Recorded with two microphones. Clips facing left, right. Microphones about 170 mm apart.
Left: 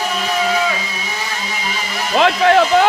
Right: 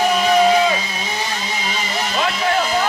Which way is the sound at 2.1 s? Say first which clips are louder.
Left 8 dB; 70° left (ahead or behind).